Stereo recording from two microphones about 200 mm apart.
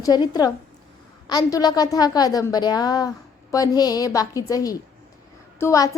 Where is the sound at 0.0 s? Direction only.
20° left (ahead or behind).